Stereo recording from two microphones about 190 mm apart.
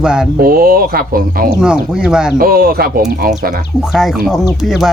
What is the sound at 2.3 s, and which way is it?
Speech, 50° right (ahead or behind).